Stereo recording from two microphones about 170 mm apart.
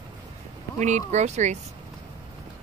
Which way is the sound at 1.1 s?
45° right (ahead or behind).